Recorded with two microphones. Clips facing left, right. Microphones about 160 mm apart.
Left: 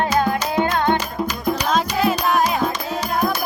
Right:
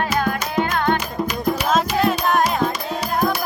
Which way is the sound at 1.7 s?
Centre (ahead or behind).